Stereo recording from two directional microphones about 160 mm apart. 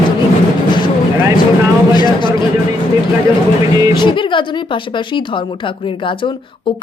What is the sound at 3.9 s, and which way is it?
Speech, 30° left (ahead or behind).